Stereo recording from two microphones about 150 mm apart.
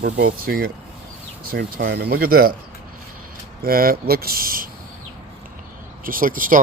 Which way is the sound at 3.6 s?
80° right.